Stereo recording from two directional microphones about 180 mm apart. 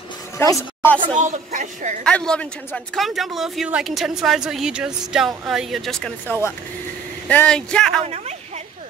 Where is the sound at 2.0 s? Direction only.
5° left (ahead or behind).